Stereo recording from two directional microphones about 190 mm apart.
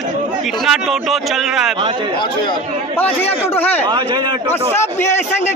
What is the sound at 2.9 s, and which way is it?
Speech, 10° left (ahead or behind).